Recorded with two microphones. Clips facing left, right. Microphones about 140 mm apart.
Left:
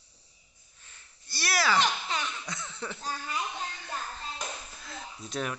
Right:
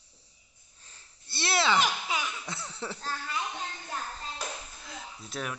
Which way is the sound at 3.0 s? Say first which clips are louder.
Left 2 dB; 15° left (ahead or behind).